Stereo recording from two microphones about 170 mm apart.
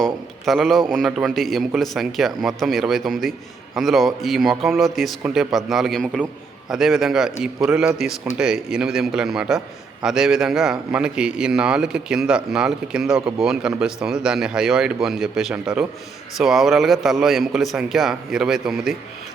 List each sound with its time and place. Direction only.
0.0 s a man's voice: centre (ahead or behind)